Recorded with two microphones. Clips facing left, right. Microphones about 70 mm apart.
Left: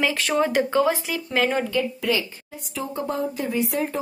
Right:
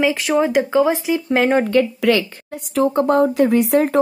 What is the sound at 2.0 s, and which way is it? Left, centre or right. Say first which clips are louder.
Speech: right 8 dB; right.